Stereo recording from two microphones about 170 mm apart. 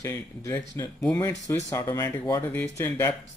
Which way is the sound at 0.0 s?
15° left (ahead or behind).